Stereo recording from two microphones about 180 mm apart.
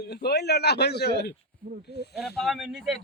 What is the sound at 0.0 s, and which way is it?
Speech, 65° left (ahead or behind).